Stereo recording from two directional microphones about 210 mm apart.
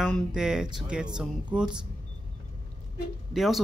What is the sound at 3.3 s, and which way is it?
Speech, centre (ahead or behind).